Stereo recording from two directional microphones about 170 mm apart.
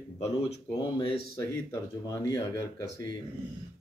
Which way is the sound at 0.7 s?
25° left (ahead or behind).